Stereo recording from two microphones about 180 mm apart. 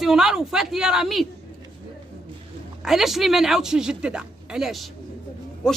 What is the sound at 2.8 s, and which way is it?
A woman's voice, centre (ahead or behind).